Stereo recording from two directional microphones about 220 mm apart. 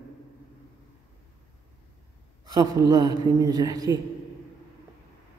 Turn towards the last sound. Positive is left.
turn(degrees=-15)  # may be behind; listen again after turning